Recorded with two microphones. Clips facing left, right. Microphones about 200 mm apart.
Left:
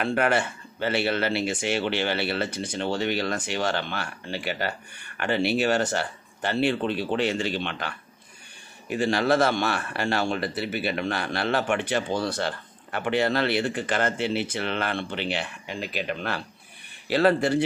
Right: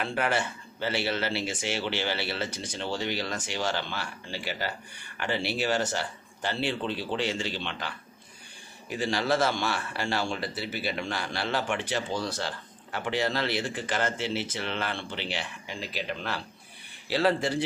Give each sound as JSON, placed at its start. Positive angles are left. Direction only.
{"t": 0.0, "sound": "speech", "side_deg": 60}